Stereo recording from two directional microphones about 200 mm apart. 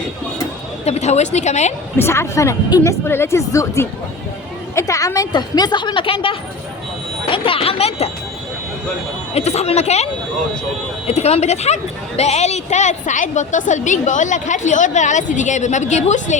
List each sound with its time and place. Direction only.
0.9 s a woman's voice: 35° left (ahead or behind)
2.0 s a woman's voice: 15° left (ahead or behind); by 8.1 s 30° left (ahead or behind)
9.3 s a woman's voice: 35° left (ahead or behind)